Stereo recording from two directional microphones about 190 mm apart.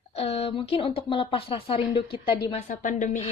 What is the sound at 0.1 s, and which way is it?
Speech, 30° left (ahead or behind).